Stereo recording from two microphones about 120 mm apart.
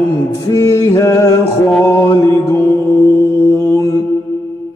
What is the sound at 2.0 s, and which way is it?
Mantra, 25° left (ahead or behind).